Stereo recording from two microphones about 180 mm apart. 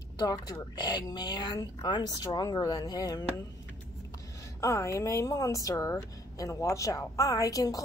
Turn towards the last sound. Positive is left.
turn(degrees=20)  # may be behind; listen again after turning